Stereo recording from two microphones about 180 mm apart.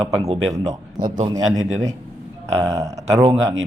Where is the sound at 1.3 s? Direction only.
20° right (ahead or behind).